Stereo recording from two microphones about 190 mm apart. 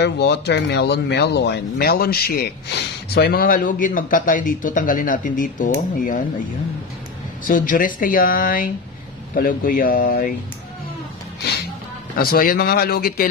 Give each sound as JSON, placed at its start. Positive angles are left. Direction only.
{"t": 0.0, "sound": "speech", "side_deg": 60}
{"t": 7.4, "sound": "speech", "side_deg": 45}
{"t": 11.4, "sound": "music", "side_deg": 60}
{"t": 12.2, "sound": "speech", "side_deg": 50}